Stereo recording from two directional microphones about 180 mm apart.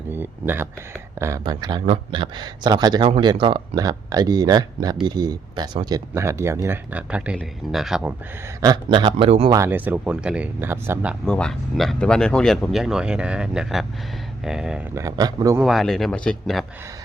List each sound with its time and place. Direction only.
0.1 s a sound: 10° right (ahead or behind)
1.2 s speech: 20° right (ahead or behind); by 8.1 s 5° right (ahead or behind)
8.6 s speech: 25° right (ahead or behind)
9.6 s speech: 10° right (ahead or behind)
11.3 s speech: 5° left (ahead or behind)
14.9 s speech: 20° right (ahead or behind)
15.6 s speech: centre (ahead or behind)